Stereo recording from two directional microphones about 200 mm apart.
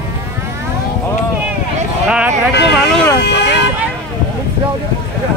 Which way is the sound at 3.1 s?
55° left (ahead or behind).